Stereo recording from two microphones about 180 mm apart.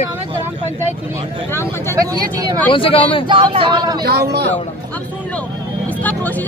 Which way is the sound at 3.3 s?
30° right (ahead or behind).